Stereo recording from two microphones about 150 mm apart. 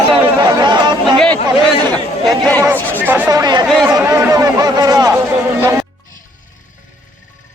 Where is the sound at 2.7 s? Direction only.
10° left (ahead or behind).